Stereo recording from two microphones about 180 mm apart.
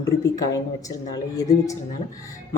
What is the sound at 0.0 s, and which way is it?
Speech, 20° left (ahead or behind).